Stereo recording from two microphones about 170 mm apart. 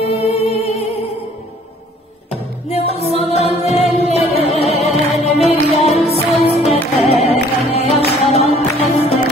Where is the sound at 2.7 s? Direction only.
35° left (ahead or behind).